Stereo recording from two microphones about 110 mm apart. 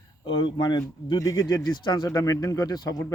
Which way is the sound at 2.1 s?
30° left (ahead or behind).